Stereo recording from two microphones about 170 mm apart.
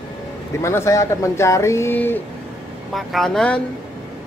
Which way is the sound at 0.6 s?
15° left (ahead or behind).